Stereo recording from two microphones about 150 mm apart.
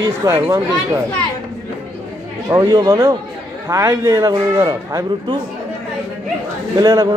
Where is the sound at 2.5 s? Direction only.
25° right (ahead or behind).